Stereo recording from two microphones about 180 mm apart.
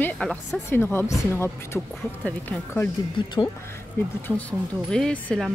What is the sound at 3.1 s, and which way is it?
Speech, 25° left (ahead or behind).